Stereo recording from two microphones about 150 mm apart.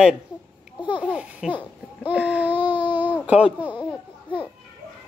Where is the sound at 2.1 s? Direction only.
10° right (ahead or behind).